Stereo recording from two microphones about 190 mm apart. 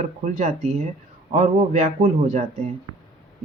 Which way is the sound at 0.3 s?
35° right (ahead or behind).